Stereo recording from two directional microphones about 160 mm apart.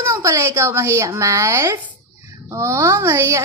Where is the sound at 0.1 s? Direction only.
20° right (ahead or behind).